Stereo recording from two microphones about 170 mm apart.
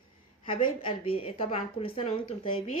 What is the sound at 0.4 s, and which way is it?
A woman's voice, 30° left (ahead or behind).